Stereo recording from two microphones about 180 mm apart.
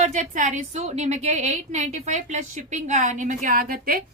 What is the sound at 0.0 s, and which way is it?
A woman's voice, 45° right (ahead or behind).